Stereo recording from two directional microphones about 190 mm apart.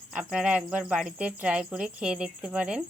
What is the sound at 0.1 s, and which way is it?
Speech, 5° right (ahead or behind).